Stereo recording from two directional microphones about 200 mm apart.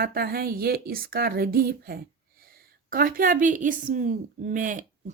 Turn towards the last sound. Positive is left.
turn(degrees=-40)  # may be behind; listen again after turning